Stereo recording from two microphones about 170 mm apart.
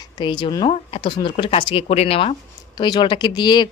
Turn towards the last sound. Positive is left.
turn(degrees=25)  # may be behind; listen again after turning